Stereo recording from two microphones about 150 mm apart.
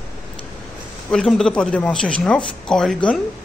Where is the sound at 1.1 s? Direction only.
5° left (ahead or behind).